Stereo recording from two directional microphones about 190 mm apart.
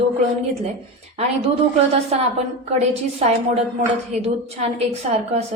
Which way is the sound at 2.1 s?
35° right (ahead or behind).